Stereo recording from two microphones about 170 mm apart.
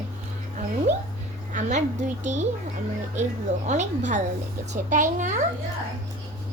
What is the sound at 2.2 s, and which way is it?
Speech, 45° right (ahead or behind).